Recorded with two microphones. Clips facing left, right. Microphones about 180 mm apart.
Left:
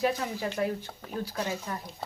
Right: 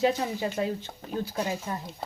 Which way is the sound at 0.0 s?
25° right (ahead or behind).